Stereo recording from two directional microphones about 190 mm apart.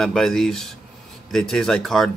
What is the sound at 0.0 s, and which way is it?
Speech, centre (ahead or behind).